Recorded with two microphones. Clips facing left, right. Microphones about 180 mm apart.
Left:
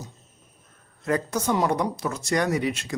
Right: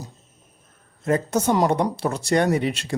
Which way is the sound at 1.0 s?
25° right (ahead or behind).